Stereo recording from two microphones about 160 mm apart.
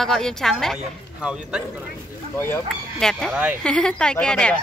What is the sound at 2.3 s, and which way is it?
Speech, 15° left (ahead or behind).